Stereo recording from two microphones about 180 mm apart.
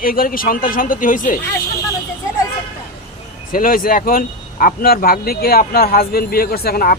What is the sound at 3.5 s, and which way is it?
Speech, 50° left (ahead or behind).